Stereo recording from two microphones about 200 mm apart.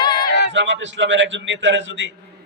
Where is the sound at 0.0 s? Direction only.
20° left (ahead or behind).